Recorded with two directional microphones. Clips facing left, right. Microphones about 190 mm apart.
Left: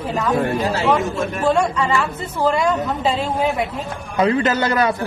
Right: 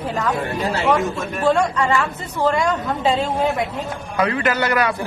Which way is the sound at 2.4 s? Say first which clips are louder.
Left 1 dB; 5° left (ahead or behind).